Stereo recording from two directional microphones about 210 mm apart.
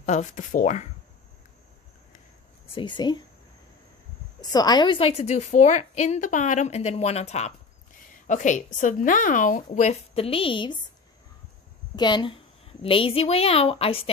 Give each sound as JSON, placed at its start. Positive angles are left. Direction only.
{"t": 0.0, "sound": "a woman's voice", "side_deg": 35}
{"t": 2.7, "sound": "a woman's voice", "side_deg": 20}
{"t": 4.4, "sound": "a woman's voice", "side_deg": 20}
{"t": 11.9, "sound": "a woman's voice", "side_deg": 20}